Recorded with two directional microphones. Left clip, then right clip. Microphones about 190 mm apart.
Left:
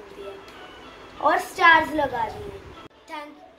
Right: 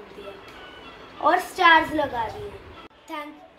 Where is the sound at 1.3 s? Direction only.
20° left (ahead or behind).